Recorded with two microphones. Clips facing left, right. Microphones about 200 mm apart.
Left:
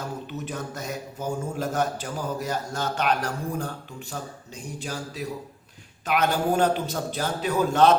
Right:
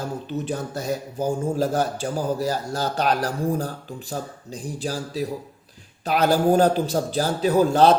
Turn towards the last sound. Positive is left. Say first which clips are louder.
# right 4 dB
turn(degrees=-35)  # may be behind; listen again after turning